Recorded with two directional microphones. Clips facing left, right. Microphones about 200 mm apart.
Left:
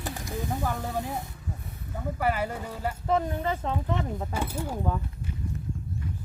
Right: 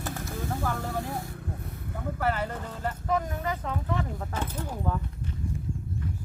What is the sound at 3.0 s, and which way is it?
Speech, 30° left (ahead or behind).